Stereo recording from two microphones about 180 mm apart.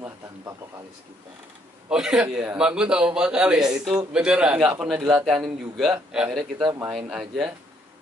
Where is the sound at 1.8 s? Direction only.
5° right (ahead or behind).